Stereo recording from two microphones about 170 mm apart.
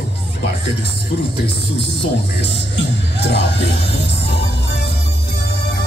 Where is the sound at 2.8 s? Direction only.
90° left.